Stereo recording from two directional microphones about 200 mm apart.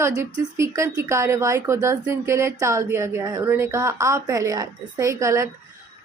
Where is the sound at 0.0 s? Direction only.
15° right (ahead or behind).